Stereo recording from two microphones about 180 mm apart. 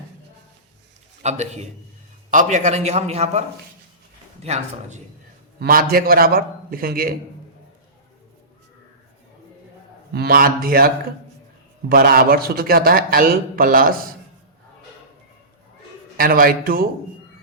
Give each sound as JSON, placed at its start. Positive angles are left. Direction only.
{"t": 1.2, "sound": "a man's voice", "side_deg": -40}
{"t": 4.4, "sound": "a man's voice", "side_deg": -40}
{"t": 5.5, "sound": "a man's voice", "side_deg": -55}
{"t": 10.1, "sound": "a man's voice", "side_deg": -60}
{"t": 16.1, "sound": "a man's voice", "side_deg": -50}